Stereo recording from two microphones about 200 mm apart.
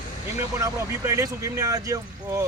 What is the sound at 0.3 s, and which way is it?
Speech, 15° right (ahead or behind).